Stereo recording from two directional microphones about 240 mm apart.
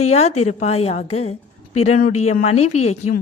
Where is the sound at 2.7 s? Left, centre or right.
Left.